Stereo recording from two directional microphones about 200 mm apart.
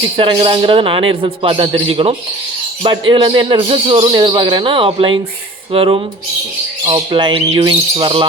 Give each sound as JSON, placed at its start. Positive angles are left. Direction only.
{"t": 0.2, "sound": "speech", "side_deg": -25}